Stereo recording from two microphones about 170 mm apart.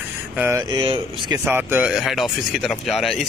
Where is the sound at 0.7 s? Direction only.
25° right (ahead or behind).